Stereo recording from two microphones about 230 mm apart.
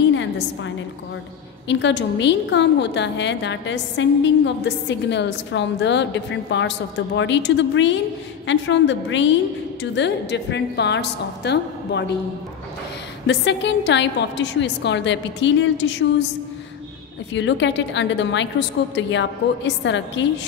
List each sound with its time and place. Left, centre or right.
0.1 s a sound: left
1.7 s a woman's voice: left
13.3 s a woman's voice: left
17.3 s a woman's voice: left